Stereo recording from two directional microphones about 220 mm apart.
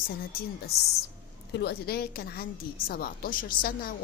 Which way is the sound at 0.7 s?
45° left (ahead or behind).